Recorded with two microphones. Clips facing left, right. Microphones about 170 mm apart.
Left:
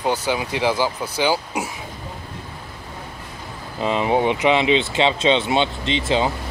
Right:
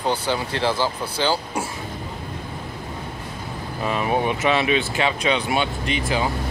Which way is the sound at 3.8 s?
20° left (ahead or behind).